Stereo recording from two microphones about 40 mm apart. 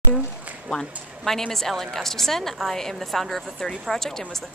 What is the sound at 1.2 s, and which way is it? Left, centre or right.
A woman's voice, centre.